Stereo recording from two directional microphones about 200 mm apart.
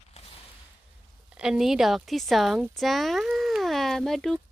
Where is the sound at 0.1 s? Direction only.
30° left (ahead or behind).